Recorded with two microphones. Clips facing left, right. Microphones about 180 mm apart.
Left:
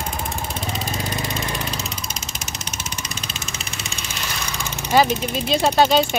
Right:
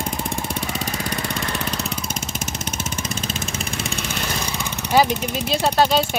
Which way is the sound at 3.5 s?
55° right (ahead or behind).